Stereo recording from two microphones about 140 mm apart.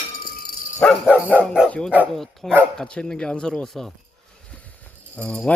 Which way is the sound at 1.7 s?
10° left (ahead or behind).